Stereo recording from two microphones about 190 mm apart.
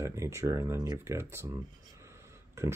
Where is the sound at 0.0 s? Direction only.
15° right (ahead or behind).